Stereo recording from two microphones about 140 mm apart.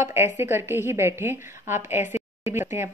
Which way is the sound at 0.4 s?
15° right (ahead or behind).